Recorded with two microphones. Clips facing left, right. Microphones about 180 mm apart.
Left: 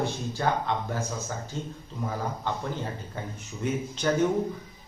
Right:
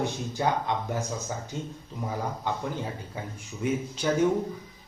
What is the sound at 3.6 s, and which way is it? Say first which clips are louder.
Speech: right 1 dB; 10° right (ahead or behind).